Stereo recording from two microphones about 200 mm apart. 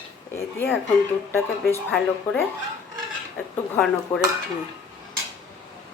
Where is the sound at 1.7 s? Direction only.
10° left (ahead or behind).